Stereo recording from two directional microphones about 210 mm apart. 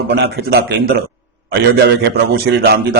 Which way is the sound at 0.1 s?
50° right (ahead or behind).